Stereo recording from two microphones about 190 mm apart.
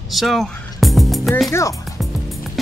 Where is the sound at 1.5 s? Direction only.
15° left (ahead or behind).